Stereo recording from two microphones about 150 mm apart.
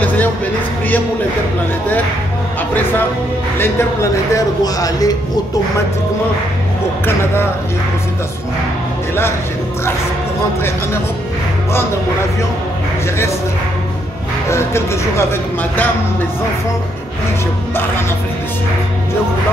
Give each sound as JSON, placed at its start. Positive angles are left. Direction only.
{"t": 4.7, "sound": "speech", "side_deg": 25}
{"t": 14.5, "sound": "speech", "side_deg": 15}